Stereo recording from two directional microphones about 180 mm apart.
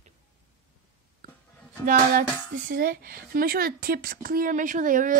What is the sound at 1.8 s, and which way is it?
Speech, 50° right (ahead or behind).